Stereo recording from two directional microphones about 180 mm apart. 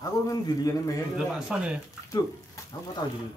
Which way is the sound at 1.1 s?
5° right (ahead or behind).